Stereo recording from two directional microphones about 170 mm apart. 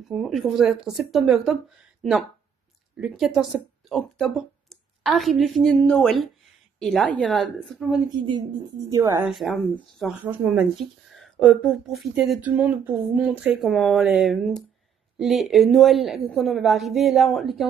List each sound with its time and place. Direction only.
0.1 s speech: centre (ahead or behind)
3.0 s speech: 5° right (ahead or behind)
8.2 s a woman's voice: 25° right (ahead or behind)
9.3 s speech: centre (ahead or behind)